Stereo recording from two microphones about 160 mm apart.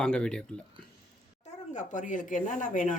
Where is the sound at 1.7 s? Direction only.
50° left (ahead or behind).